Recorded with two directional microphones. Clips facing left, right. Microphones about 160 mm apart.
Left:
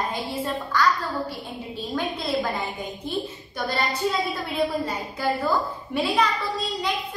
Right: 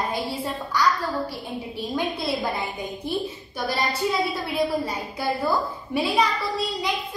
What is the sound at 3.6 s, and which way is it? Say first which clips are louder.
A woman's voice: even; 10° right (ahead or behind).